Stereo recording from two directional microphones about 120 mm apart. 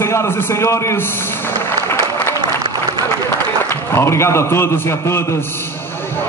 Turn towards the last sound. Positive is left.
turn(degrees=20)  # may be behind; listen again after turning